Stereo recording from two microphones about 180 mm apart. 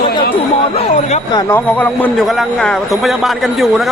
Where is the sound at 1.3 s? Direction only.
20° left (ahead or behind).